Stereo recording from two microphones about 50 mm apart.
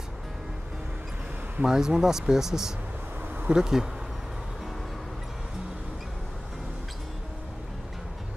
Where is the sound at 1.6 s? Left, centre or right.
Centre.